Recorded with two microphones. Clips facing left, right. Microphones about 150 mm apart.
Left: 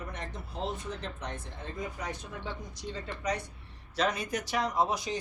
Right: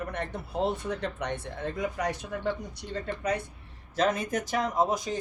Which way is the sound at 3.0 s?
55° right (ahead or behind).